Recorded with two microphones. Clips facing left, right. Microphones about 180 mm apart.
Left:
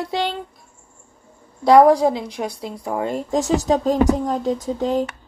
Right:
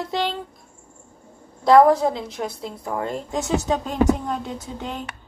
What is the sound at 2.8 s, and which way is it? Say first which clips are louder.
Speech: left 3 dB; 10° left (ahead or behind).